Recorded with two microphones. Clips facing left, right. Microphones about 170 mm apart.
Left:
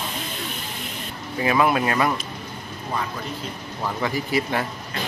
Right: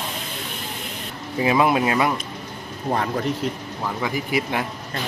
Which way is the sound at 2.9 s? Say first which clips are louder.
Right 7 dB; 60° right (ahead or behind).